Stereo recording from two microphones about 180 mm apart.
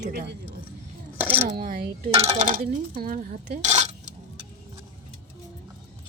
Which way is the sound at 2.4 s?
50° right (ahead or behind).